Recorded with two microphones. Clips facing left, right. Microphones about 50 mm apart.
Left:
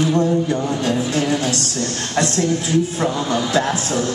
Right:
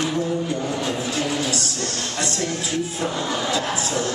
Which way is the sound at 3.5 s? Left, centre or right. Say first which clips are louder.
Left 5 dB; left.